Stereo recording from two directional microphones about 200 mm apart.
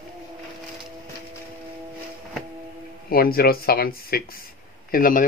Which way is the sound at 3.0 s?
50° left (ahead or behind).